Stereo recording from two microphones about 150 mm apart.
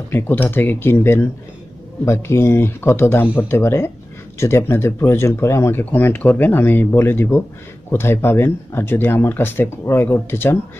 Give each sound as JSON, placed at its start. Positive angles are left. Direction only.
{"t": 0.1, "sound": "speech", "side_deg": 15}